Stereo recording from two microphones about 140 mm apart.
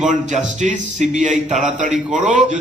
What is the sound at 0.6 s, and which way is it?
A man's voice, 60° right (ahead or behind).